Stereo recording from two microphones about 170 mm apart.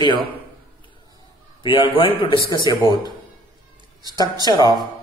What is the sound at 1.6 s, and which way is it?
A man's voice, 30° left (ahead or behind).